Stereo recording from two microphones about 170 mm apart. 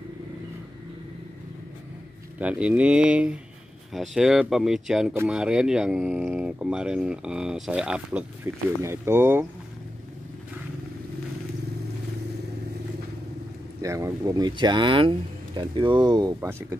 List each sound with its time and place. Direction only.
2.3 s speech: 5° right (ahead or behind)
13.7 s speech: 20° right (ahead or behind)